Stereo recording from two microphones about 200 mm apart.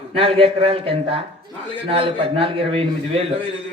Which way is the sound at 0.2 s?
30° right (ahead or behind).